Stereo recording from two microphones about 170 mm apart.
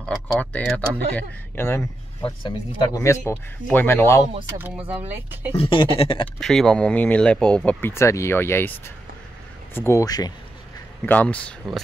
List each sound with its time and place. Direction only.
0.1 s speech: 5° left (ahead or behind)
2.2 s speech: 25° left (ahead or behind)
4.6 s speech: 10° right (ahead or behind)
5.6 s a sound: 30° left (ahead or behind)
6.4 s speech: 5° left (ahead or behind); by 10.3 s 20° left (ahead or behind)
11.1 s speech: 10° left (ahead or behind)